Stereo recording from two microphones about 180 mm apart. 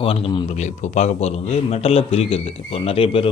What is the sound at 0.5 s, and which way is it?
Speech, 40° left (ahead or behind).